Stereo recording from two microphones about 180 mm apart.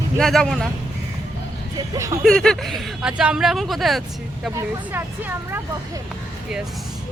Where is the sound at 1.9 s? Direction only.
15° right (ahead or behind).